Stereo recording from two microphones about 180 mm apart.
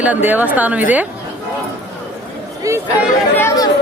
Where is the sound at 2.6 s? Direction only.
15° right (ahead or behind).